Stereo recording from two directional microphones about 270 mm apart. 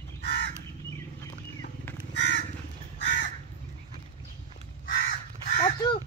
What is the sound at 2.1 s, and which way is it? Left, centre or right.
Crow, left.